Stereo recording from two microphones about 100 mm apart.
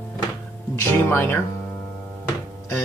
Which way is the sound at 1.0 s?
25° left (ahead or behind).